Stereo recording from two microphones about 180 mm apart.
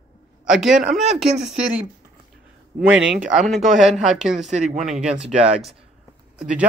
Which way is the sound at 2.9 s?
5° right (ahead or behind).